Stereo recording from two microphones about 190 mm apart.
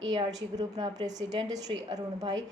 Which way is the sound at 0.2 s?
20° right (ahead or behind).